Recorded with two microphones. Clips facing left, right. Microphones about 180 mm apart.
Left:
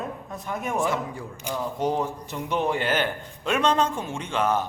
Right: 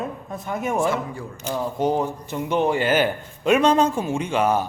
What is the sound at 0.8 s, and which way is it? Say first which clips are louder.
Speech: right 3 dB; 15° left (ahead or behind).